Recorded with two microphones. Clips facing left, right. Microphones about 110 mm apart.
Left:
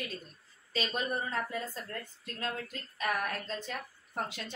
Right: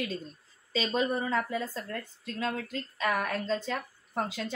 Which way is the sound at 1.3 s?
90° right.